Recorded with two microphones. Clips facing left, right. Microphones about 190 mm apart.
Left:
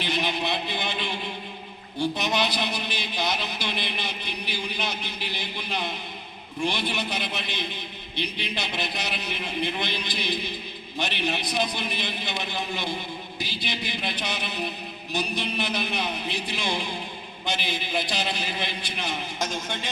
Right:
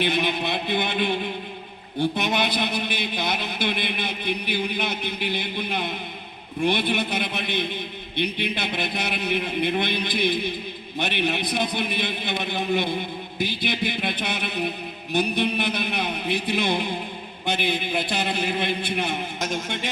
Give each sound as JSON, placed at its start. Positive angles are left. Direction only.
{"t": 0.0, "sound": "a man's voice", "side_deg": -55}